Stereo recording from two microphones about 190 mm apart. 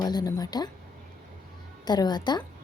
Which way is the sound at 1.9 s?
20° left (ahead or behind).